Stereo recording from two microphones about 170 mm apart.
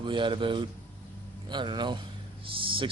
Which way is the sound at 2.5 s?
30° right (ahead or behind).